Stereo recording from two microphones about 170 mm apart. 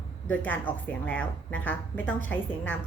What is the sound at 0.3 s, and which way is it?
A woman's voice, 10° left (ahead or behind).